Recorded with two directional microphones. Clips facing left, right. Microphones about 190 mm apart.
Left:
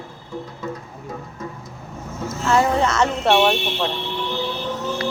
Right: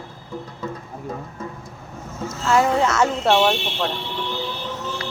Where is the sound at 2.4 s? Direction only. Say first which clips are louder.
Even; 5° right (ahead or behind).